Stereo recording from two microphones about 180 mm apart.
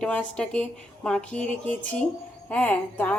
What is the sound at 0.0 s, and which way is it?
A woman's voice, 5° left (ahead or behind).